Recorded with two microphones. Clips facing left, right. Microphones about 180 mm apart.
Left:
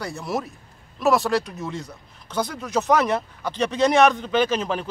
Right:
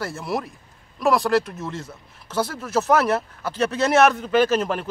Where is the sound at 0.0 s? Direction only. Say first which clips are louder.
Right 1 dB; centre (ahead or behind).